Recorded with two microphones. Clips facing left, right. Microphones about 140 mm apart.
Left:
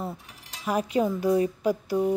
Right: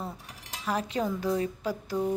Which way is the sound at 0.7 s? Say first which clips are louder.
Left 5 dB; 10° left (ahead or behind).